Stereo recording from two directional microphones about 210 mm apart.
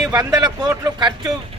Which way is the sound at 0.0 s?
5° right (ahead or behind).